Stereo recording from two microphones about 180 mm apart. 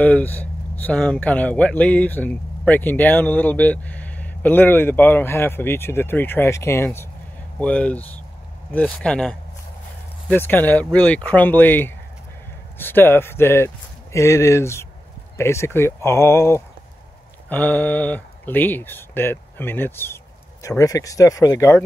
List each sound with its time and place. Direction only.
0.0 s speech: 10° left (ahead or behind)